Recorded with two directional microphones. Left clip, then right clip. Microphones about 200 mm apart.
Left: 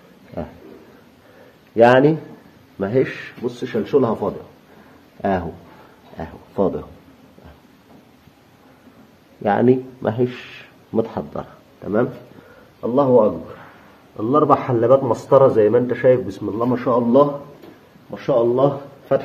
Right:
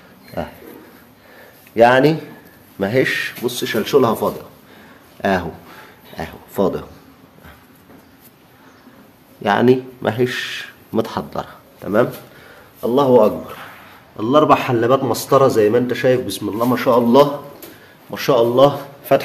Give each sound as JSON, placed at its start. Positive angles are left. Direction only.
{"t": 1.8, "sound": "speech", "side_deg": 0}
{"t": 6.1, "sound": "speech", "side_deg": -10}
{"t": 9.4, "sound": "speech", "side_deg": 0}
{"t": 14.2, "sound": "speech", "side_deg": -15}
{"t": 16.7, "sound": "speech", "side_deg": -10}
{"t": 18.1, "sound": "speech", "side_deg": -25}